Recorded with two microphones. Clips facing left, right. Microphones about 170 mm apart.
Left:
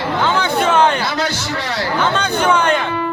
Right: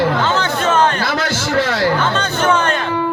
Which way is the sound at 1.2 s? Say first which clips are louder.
Right 5 dB; 50° right (ahead or behind).